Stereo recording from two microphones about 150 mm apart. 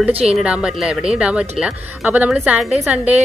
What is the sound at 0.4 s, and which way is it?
Speech, 5° right (ahead or behind).